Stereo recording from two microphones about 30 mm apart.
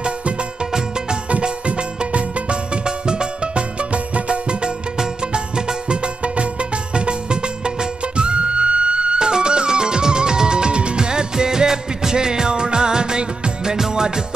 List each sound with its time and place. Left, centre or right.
1.8 s music: right
3.9 s music: right